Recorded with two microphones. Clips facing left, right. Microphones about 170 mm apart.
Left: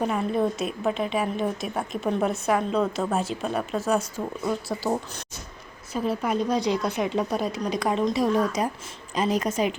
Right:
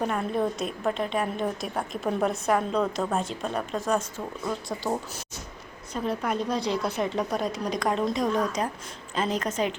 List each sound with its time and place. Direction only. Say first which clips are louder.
0.0 s a woman's voice: left 2 dB; centre (ahead or behind)